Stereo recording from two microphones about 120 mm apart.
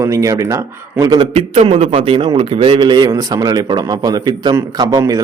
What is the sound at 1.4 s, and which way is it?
A man's voice, 50° right (ahead or behind).